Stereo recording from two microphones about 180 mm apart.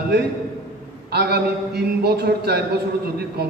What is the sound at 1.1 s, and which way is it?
A man's voice, 60° right (ahead or behind).